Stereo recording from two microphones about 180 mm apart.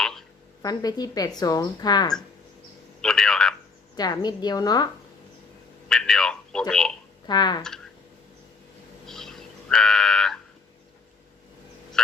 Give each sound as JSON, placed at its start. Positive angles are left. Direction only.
{"t": 0.0, "sound": "a sound", "side_deg": 0}
{"t": 0.6, "sound": "a woman's voice", "side_deg": 20}
{"t": 3.0, "sound": "telephone", "side_deg": 5}
{"t": 3.9, "sound": "a woman's voice", "side_deg": 20}
{"t": 5.9, "sound": "telephone", "side_deg": 5}
{"t": 7.3, "sound": "a woman's voice", "side_deg": 25}
{"t": 9.0, "sound": "a sound", "side_deg": 0}